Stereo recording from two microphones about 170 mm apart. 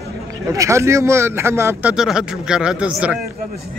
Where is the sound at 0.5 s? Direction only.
15° right (ahead or behind).